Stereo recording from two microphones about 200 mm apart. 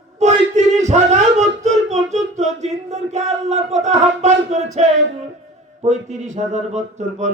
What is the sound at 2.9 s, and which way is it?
Speech, 35° right (ahead or behind).